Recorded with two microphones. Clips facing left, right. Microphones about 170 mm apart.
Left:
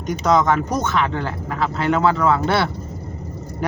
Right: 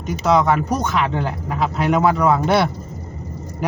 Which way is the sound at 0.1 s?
5° right (ahead or behind).